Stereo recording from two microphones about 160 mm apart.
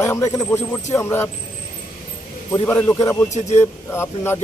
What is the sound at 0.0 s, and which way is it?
Speech, 20° left (ahead or behind).